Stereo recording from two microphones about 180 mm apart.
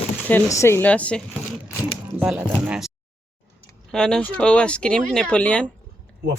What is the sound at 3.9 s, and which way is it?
Speech, 5° left (ahead or behind).